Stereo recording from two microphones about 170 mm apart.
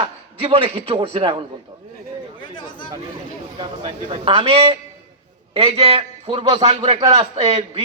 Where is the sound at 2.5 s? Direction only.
30° left (ahead or behind).